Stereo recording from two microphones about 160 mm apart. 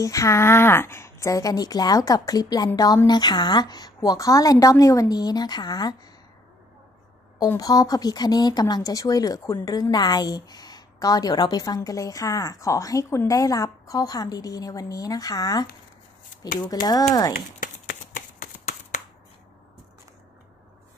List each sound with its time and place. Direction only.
0.0 s a woman's voice: 20° left (ahead or behind)
7.3 s a woman's voice: 25° left (ahead or behind)
16.7 s a woman's voice: 25° left (ahead or behind)
17.3 s shuffling cards: 60° left (ahead or behind)